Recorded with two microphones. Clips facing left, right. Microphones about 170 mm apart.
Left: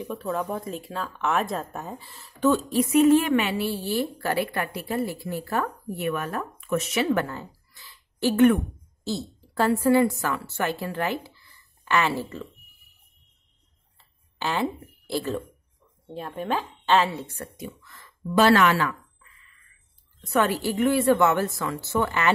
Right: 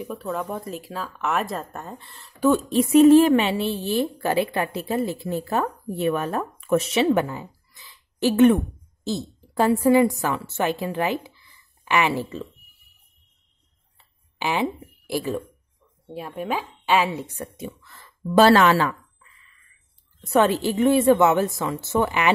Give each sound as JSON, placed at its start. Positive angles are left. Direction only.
{"t": 0.0, "sound": "speech", "side_deg": 0}
{"t": 2.5, "sound": "a woman's voice", "side_deg": -25}
{"t": 13.9, "sound": "a sound", "side_deg": -15}
{"t": 16.1, "sound": "speech", "side_deg": -5}
{"t": 17.6, "sound": "speech", "side_deg": -30}
{"t": 20.3, "sound": "a woman's voice", "side_deg": -25}